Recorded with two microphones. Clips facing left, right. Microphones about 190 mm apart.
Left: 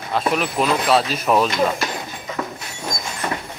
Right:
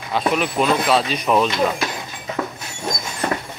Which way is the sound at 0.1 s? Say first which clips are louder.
Right 1 dB; centre (ahead or behind).